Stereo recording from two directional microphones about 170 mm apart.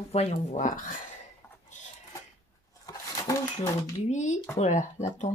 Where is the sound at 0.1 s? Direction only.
40° left (ahead or behind).